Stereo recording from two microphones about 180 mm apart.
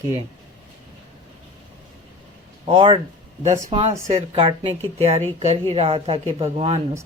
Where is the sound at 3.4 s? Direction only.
40° right (ahead or behind).